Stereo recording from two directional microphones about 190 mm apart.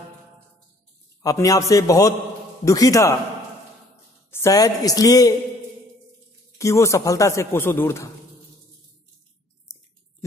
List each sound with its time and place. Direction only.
1.2 s speech: 15° left (ahead or behind)
4.3 s a woman's voice: 15° left (ahead or behind)
6.6 s speech: 15° left (ahead or behind)